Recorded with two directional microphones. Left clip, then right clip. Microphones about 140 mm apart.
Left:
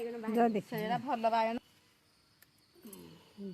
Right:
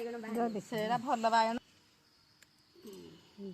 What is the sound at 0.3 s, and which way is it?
Speech, 85° left.